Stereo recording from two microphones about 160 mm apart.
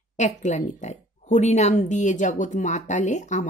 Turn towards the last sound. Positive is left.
turn(degrees=50)  # may be behind; listen again after turning